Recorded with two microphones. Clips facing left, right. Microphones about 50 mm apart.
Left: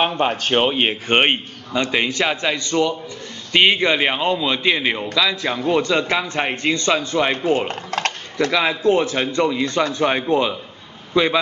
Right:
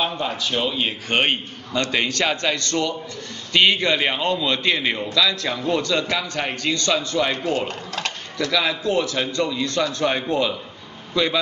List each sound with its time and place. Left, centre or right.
0.2 s a man's voice: left